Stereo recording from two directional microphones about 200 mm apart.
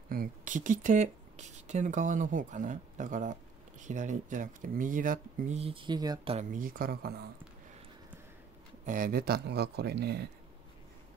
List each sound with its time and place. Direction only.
0.1 s speech: 45° right (ahead or behind); by 6.3 s 20° right (ahead or behind)
6.3 s speech: 45° right (ahead or behind)
8.8 s speech: 45° right (ahead or behind)